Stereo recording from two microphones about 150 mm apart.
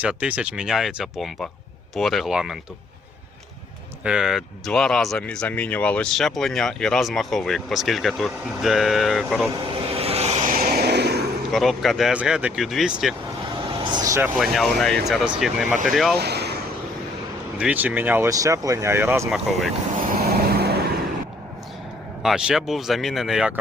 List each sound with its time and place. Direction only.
0.0 s speech: 10° right (ahead or behind)
4.0 s speech: 5° right (ahead or behind)
9.9 s vehicle: 40° right (ahead or behind)
10.5 s a sound: 75° right (ahead or behind)
11.5 s speech: centre (ahead or behind)
13.8 s speech: 25° right (ahead or behind)
14.3 s speech: centre (ahead or behind)
16.1 s vehicle: 90° right
17.6 s speech: 10° right (ahead or behind)
19.3 s speech: centre (ahead or behind)
20.0 s vehicle: 90° right
22.2 s speech: 5° right (ahead or behind)